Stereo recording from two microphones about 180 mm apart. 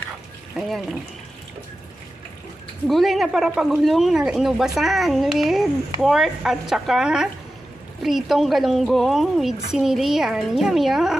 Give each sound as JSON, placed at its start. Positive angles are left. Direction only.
{"t": 0.5, "sound": "speech", "side_deg": 0}
{"t": 2.8, "sound": "speech", "side_deg": 0}